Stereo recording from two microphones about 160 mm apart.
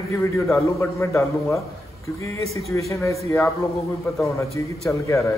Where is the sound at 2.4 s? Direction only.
40° right (ahead or behind).